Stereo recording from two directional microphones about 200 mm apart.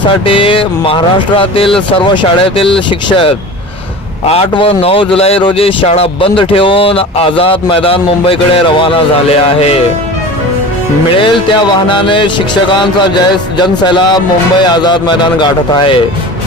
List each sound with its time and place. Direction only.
0.3 s a man's voice: 25° left (ahead or behind)
11.2 s a man's voice: 25° left (ahead or behind)